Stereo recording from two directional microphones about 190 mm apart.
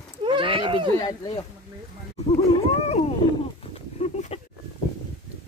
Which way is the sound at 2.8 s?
35° left (ahead or behind).